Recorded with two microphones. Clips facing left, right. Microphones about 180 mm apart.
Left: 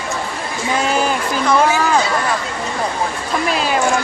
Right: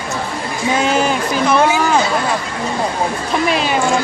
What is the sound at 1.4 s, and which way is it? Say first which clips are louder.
Chatter: even; 20° right (ahead or behind).